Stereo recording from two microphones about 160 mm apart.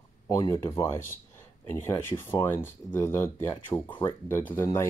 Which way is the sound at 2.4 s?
15° left (ahead or behind).